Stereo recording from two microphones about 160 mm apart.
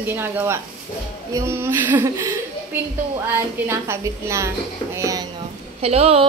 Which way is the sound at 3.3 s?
15° right (ahead or behind).